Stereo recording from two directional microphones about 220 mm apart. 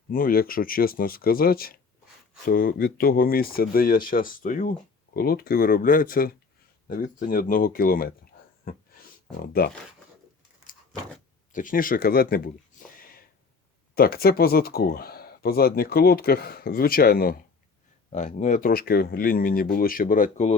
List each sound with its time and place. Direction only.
0.1 s speech: 40° left (ahead or behind)
9.4 s speech: 45° left (ahead or behind)
11.5 s speech: 40° left (ahead or behind)
13.9 s speech: 45° left (ahead or behind)